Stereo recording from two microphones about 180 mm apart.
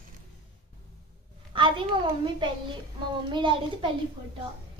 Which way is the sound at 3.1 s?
25° right (ahead or behind).